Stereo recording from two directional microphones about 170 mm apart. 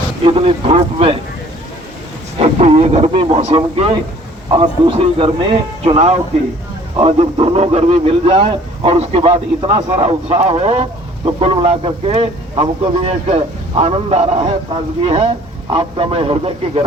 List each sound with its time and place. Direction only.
0.3 s speech: 35° right (ahead or behind)
2.4 s speech: 35° right (ahead or behind)
4.4 s a man's voice: 25° right (ahead or behind)